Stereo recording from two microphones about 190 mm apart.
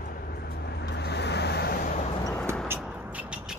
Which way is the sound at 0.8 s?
60° left (ahead or behind).